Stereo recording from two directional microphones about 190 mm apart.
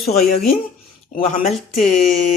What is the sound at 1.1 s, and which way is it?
Speech, 45° left (ahead or behind).